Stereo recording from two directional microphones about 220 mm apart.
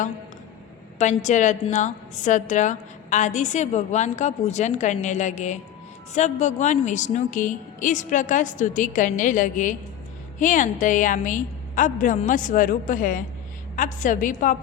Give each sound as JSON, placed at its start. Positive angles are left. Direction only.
{"t": 0.9, "sound": "a woman's voice", "side_deg": 30}